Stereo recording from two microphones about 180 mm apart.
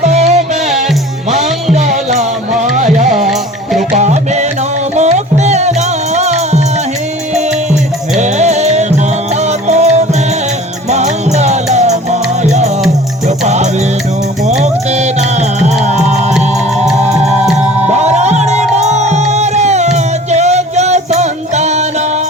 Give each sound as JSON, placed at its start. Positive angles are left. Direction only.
{"t": 0.0, "sound": "music", "side_deg": -40}
{"t": 1.7, "sound": "music", "side_deg": -40}
{"t": 8.2, "sound": "music", "side_deg": -40}
{"t": 17.8, "sound": "music", "side_deg": -40}